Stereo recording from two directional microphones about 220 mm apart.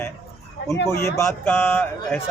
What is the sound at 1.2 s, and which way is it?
A man's voice, 10° left (ahead or behind).